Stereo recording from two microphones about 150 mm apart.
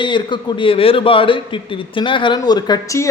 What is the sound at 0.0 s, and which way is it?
A man's voice, 30° left (ahead or behind).